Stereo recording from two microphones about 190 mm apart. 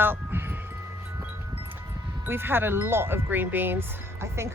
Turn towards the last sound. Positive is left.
turn(degrees=-15)  # may be behind; listen again after turning